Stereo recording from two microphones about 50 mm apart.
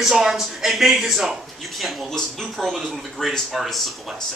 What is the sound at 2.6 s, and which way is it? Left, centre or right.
Speech, centre.